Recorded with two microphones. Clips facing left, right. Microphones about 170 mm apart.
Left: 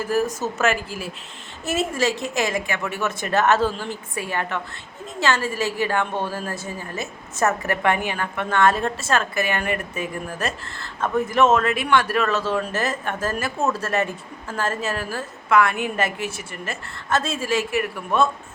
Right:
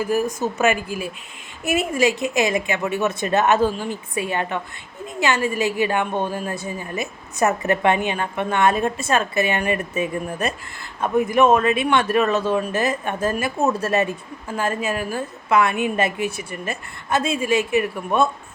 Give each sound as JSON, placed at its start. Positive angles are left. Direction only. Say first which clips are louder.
{"t": 0.0, "sound": "a woman's voice", "louder": "right 1 dB", "side_deg": -15}